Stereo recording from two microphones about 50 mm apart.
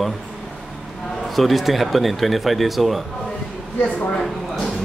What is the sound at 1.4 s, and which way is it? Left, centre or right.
Speech, centre.